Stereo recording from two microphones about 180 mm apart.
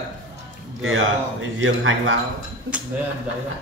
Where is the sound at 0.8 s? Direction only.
90° right.